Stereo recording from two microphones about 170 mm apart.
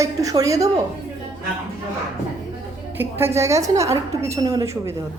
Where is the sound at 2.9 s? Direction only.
15° right (ahead or behind).